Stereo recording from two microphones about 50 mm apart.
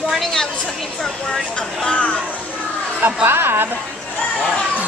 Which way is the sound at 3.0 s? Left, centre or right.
Right.